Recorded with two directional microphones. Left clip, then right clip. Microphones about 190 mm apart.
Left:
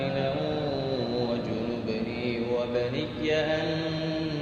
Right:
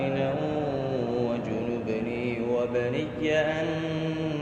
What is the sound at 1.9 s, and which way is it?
Mantra, 45° right (ahead or behind).